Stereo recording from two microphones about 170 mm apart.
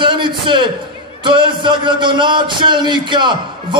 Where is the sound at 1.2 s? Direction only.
30° right (ahead or behind).